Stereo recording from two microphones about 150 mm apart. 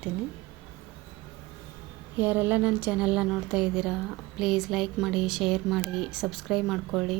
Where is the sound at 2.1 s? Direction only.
15° right (ahead or behind).